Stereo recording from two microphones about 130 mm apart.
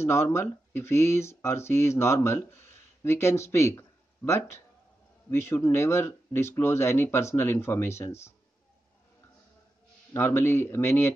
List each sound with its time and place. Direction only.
0.0 s speech: 20° left (ahead or behind)
10.1 s speech: 15° left (ahead or behind)